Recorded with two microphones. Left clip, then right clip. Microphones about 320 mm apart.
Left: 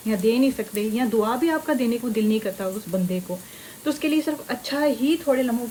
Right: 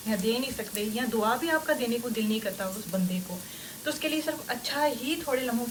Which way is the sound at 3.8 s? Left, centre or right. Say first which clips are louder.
Left 6 dB; left.